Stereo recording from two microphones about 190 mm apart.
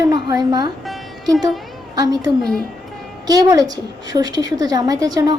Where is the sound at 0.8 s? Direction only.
Centre (ahead or behind).